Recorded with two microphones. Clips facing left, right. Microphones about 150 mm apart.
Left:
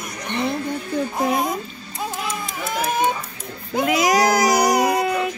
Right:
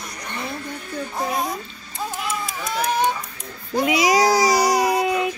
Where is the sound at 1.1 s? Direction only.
20° left (ahead or behind).